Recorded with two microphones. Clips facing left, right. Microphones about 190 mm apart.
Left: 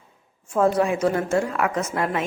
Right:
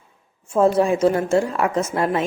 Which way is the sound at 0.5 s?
25° right (ahead or behind).